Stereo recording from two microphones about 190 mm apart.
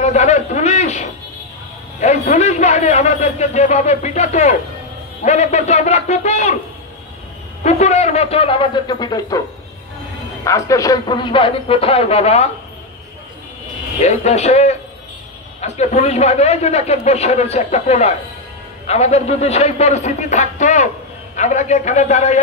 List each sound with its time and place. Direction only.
0.0 s a sound: 35° left (ahead or behind)
2.0 s a man's voice: 35° left (ahead or behind)
7.6 s a man's voice: 35° left (ahead or behind)
10.4 s speech: 15° left (ahead or behind); by 12.4 s 35° left (ahead or behind)
14.0 s a man's voice: 35° left (ahead or behind)